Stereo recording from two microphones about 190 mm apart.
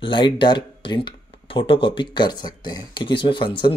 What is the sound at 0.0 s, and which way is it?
Speech, 25° left (ahead or behind).